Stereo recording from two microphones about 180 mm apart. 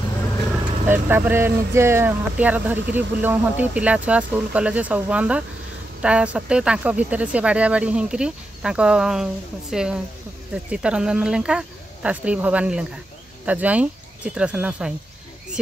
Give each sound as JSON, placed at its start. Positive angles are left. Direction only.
{"t": 0.8, "sound": "speech", "side_deg": -10}